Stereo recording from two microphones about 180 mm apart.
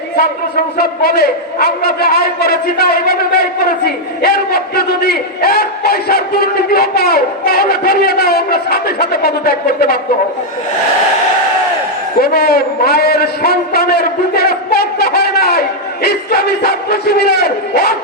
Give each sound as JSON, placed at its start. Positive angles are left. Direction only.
{"t": 0.2, "sound": "a man's voice", "side_deg": 60}
{"t": 12.2, "sound": "a man's voice", "side_deg": 60}